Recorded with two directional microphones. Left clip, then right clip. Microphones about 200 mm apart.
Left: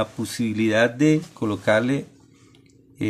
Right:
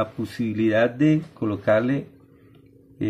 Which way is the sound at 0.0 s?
20° left (ahead or behind).